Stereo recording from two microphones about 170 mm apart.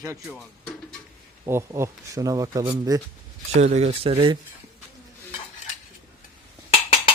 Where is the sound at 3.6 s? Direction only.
40° right (ahead or behind).